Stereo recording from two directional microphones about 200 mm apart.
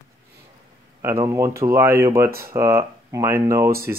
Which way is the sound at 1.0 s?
15° right (ahead or behind).